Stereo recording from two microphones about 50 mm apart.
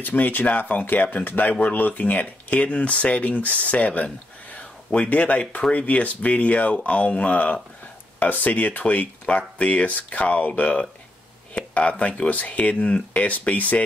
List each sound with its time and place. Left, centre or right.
0.0 s speech: left